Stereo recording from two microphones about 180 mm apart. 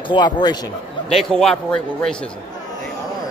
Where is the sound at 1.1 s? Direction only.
5° left (ahead or behind).